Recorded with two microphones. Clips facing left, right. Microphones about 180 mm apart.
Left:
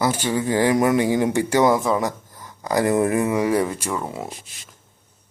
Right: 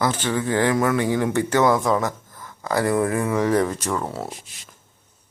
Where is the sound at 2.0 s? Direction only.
15° left (ahead or behind).